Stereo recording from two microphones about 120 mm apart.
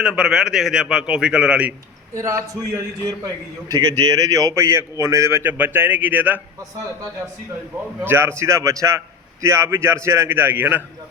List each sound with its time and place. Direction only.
0.0 s a man's voice: 5° right (ahead or behind)
2.1 s a man's voice: 25° right (ahead or behind)
8.0 s a man's voice: 20° right (ahead or behind)